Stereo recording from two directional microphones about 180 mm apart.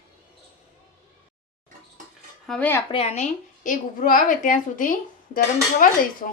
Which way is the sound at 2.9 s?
35° left (ahead or behind).